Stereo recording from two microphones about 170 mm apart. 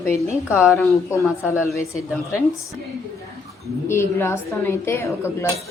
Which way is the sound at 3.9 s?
15° left (ahead or behind).